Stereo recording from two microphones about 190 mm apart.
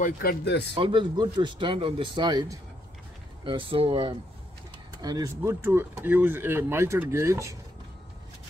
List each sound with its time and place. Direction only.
0.0 s speech: 55° left (ahead or behind)
0.7 s speech: 25° right (ahead or behind)